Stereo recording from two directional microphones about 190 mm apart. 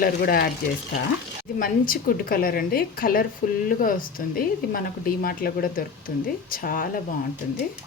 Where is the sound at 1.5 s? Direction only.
45° left (ahead or behind).